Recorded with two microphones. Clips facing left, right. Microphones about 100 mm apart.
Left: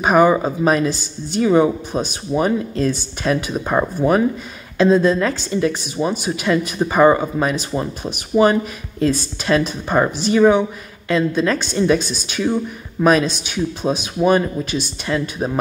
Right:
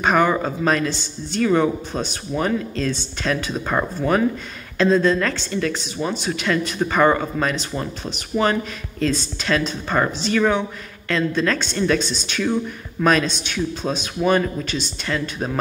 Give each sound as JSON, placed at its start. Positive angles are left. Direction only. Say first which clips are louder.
{"t": 0.0, "sound": "speech", "louder": "left 4 dB", "side_deg": 15}